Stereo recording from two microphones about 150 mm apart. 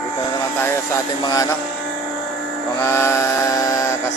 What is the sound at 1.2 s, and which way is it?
Music, 25° left (ahead or behind).